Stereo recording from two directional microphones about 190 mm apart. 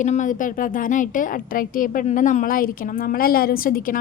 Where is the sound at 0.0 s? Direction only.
40° left (ahead or behind).